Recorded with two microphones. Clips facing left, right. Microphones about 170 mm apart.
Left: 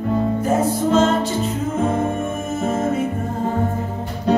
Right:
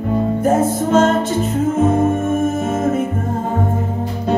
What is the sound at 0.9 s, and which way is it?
Music, 50° right (ahead or behind).